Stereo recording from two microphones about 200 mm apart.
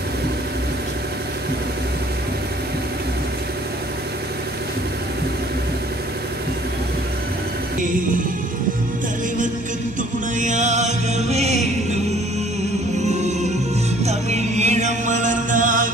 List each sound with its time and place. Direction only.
10.4 s music: 35° right (ahead or behind)
13.0 s music: 35° right (ahead or behind)